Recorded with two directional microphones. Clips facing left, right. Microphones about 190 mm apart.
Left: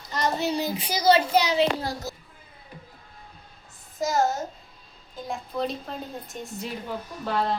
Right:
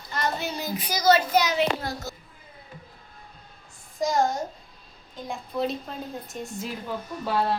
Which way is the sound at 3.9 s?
5° left (ahead or behind).